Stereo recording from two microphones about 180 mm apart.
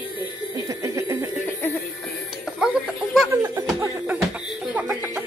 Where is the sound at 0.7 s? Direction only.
15° right (ahead or behind).